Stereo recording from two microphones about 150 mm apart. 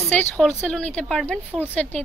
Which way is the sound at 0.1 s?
10° left (ahead or behind).